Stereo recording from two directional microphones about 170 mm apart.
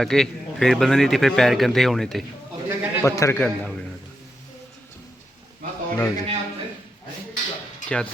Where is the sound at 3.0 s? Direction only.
15° left (ahead or behind).